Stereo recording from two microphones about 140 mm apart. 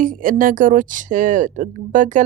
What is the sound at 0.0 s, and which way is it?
A woman's voice, 75° right (ahead or behind).